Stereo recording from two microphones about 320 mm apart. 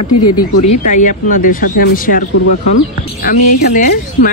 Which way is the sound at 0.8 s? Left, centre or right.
Left.